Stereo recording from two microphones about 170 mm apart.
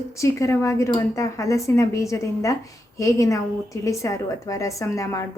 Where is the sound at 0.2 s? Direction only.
15° left (ahead or behind).